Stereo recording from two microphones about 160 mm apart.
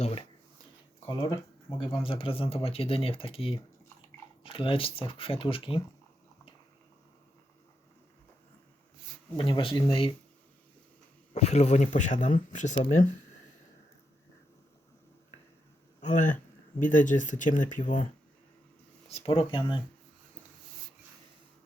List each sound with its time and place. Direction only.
0.0 s speech: 35° left (ahead or behind)
1.0 s speech: 25° left (ahead or behind)
9.4 s speech: 30° left (ahead or behind)
11.3 s speech: 45° left (ahead or behind)
16.0 s speech: 50° left (ahead or behind)
19.0 s speech: 35° left (ahead or behind)